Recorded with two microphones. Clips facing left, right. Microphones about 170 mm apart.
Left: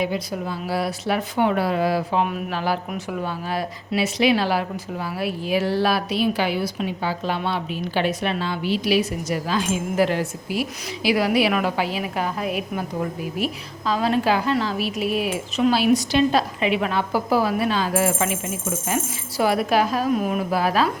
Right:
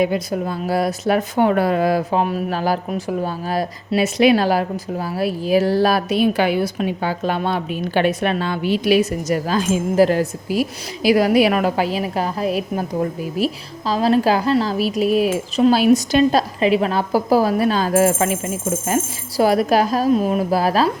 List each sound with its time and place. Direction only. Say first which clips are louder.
0.0 s speech: right 6 dB; 50° right (ahead or behind)